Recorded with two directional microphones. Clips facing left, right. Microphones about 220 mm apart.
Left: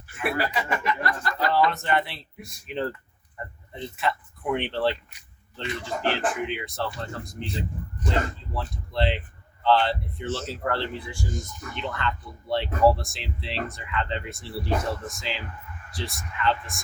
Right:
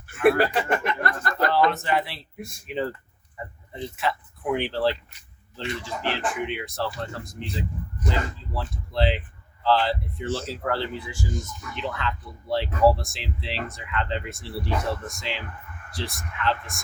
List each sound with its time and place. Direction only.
0.2 s speech: 55° right (ahead or behind)
1.5 s speech: centre (ahead or behind)
6.1 s speech: centre (ahead or behind)